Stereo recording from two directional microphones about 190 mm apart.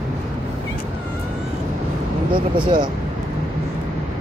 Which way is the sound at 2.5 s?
25° right (ahead or behind).